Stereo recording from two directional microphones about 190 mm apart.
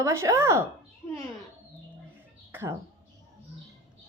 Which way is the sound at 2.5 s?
10° right (ahead or behind).